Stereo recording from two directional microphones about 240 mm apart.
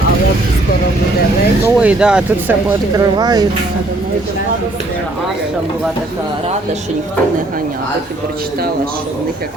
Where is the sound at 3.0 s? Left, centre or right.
Centre.